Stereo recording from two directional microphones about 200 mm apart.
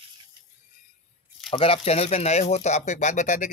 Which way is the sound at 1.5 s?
30° left (ahead or behind).